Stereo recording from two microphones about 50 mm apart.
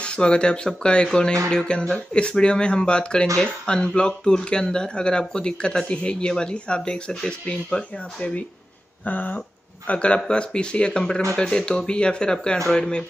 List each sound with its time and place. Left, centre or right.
0.0 s speech: centre
9.0 s speech: left; by 13.0 s centre